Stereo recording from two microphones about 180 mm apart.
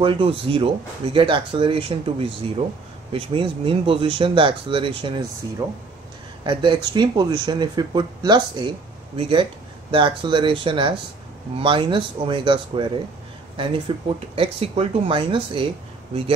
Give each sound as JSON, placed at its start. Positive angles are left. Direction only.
{"t": 0.0, "sound": "speech", "side_deg": -30}